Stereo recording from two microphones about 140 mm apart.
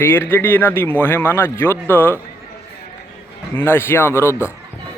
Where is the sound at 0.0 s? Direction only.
15° left (ahead or behind).